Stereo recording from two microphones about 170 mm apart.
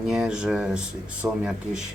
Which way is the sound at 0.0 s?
5° right (ahead or behind).